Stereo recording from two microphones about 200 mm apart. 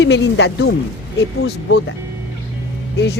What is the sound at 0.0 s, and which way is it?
Speech, 65° left (ahead or behind).